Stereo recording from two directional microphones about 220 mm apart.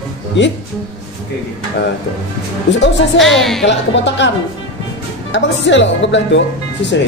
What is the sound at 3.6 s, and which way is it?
Speech, 55° left (ahead or behind).